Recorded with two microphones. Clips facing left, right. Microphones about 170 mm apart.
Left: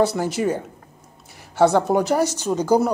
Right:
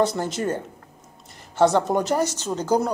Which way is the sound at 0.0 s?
10° left (ahead or behind).